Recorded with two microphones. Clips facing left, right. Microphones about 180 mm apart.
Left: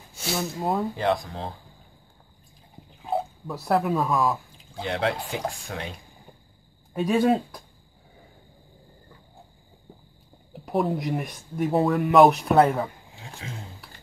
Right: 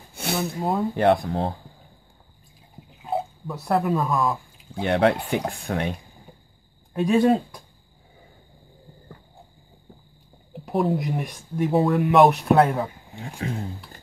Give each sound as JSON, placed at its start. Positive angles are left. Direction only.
{"t": 0.1, "sound": "a sound", "side_deg": -60}
{"t": 0.6, "sound": "speech", "side_deg": 0}
{"t": 0.9, "sound": "speech", "side_deg": -60}
{"t": 3.0, "sound": "speech", "side_deg": 0}
{"t": 4.8, "sound": "speech", "side_deg": -60}
{"t": 6.9, "sound": "speech", "side_deg": 0}
{"t": 10.6, "sound": "speech", "side_deg": 0}